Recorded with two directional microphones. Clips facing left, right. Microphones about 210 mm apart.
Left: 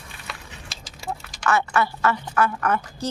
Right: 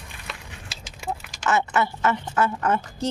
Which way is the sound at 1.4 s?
20° right (ahead or behind).